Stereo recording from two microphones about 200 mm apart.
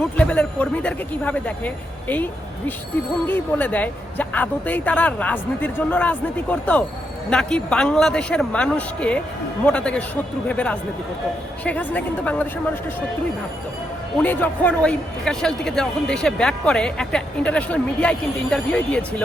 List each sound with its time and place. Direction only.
0.2 s a man's voice: 5° left (ahead or behind)
14.2 s a man's voice: 10° left (ahead or behind)